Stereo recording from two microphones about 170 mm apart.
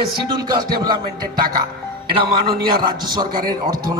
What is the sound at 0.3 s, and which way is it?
A man's voice, 25° right (ahead or behind).